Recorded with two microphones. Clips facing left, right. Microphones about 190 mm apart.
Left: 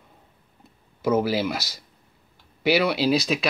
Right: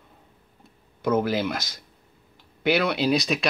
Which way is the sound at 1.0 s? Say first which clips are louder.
Left 1 dB; 5° left (ahead or behind).